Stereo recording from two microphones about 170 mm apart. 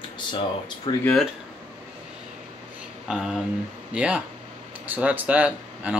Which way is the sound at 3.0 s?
Centre (ahead or behind).